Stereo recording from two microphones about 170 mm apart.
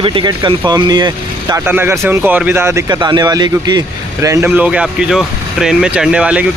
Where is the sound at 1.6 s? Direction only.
10° right (ahead or behind).